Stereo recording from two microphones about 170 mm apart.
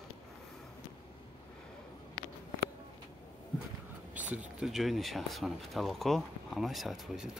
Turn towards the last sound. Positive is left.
turn(degrees=0)  # may be behind; listen again after turning